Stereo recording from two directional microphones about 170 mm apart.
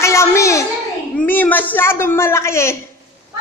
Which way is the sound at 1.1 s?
10° left (ahead or behind).